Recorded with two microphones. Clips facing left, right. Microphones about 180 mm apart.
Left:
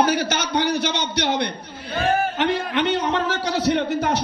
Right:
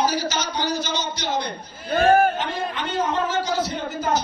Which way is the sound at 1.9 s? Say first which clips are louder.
Right 5 dB; 55° right (ahead or behind).